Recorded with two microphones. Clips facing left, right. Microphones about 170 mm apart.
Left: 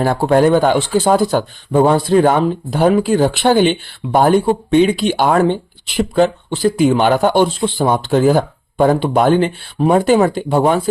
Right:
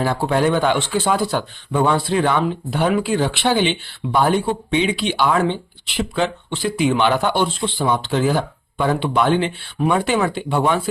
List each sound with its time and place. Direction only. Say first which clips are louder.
0.0 s speech: left 6 dB; 50° left (ahead or behind)